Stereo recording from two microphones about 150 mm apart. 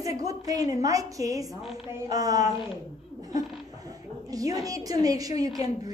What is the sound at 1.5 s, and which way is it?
Speech, centre (ahead or behind).